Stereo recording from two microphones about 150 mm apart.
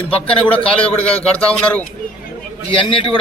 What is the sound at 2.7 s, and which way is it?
Speech, 40° left (ahead or behind).